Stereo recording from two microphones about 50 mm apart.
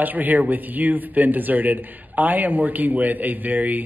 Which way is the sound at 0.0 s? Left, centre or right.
Right.